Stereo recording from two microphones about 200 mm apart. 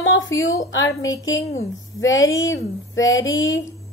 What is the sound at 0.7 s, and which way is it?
A woman's voice, 70° left (ahead or behind).